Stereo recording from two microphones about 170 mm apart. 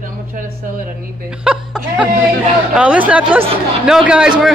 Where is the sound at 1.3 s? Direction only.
5° right (ahead or behind).